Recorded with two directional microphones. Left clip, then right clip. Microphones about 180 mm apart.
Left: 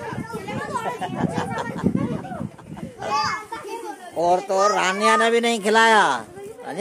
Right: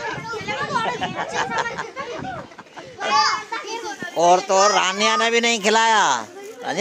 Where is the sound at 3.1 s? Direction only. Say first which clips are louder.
Right 5 dB; 30° right (ahead or behind).